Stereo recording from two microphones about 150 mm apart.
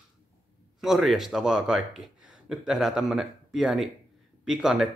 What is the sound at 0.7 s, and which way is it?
Speech, centre (ahead or behind).